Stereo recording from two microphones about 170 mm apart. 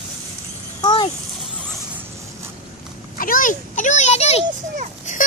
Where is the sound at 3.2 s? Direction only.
55° left (ahead or behind).